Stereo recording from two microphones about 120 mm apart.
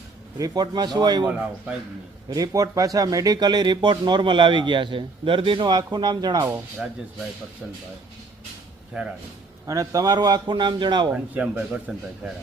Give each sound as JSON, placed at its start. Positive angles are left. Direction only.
{"t": 0.3, "sound": "speech", "side_deg": -35}
{"t": 1.3, "sound": "speech", "side_deg": -5}
{"t": 2.3, "sound": "speech", "side_deg": -30}
{"t": 9.6, "sound": "speech", "side_deg": -30}
{"t": 11.1, "sound": "speech", "side_deg": -10}